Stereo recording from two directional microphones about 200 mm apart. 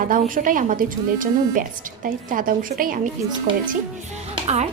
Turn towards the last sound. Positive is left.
turn(degrees=-35)  # may be behind; listen again after turning